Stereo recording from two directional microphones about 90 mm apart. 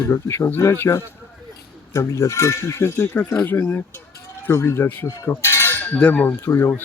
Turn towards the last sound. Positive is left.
turn(degrees=25)  # may be behind; listen again after turning